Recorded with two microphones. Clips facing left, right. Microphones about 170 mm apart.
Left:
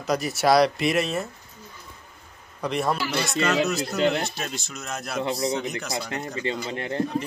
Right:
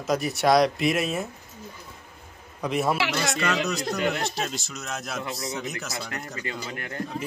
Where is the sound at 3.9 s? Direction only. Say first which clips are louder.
Left 7 dB; 25° left (ahead or behind).